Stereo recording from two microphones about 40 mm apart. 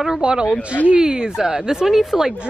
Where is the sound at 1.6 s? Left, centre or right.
Centre.